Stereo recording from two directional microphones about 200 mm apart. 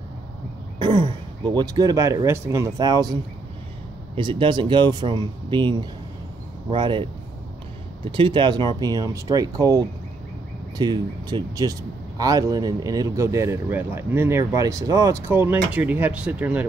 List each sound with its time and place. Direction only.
0.7 s speech: 25° right (ahead or behind); by 16.6 s 5° right (ahead or behind)